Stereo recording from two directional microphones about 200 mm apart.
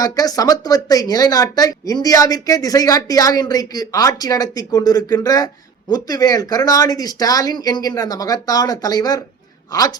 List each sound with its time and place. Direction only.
0.0 s speech: 20° left (ahead or behind)